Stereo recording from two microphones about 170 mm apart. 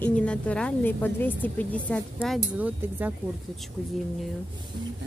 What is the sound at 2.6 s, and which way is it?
Speech, 10° right (ahead or behind).